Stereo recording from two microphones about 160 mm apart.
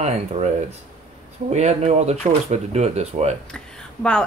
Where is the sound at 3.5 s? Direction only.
5° left (ahead or behind).